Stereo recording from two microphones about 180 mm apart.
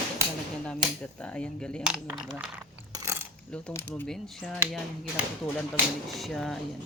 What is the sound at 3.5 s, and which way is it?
Speech, 10° left (ahead or behind).